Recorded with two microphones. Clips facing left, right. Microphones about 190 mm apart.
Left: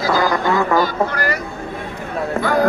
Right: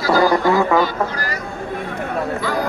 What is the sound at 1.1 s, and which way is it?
Speech, 65° left (ahead or behind).